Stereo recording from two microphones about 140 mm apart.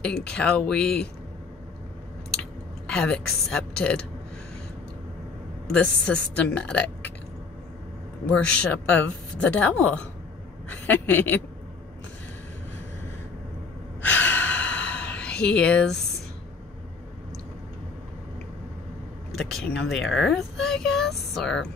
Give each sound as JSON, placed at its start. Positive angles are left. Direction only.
{"t": 0.0, "sound": "a woman's voice", "side_deg": 5}
{"t": 2.9, "sound": "speech", "side_deg": 5}
{"t": 5.7, "sound": "a woman's voice", "side_deg": 10}
{"t": 8.3, "sound": "a woman's voice", "side_deg": 10}
{"t": 10.7, "sound": "a woman's voice", "side_deg": 15}
{"t": 14.3, "sound": "a sound", "side_deg": 10}
{"t": 19.3, "sound": "a child's voice", "side_deg": 0}